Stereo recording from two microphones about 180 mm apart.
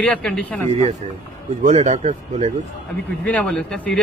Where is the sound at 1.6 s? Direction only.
40° right (ahead or behind).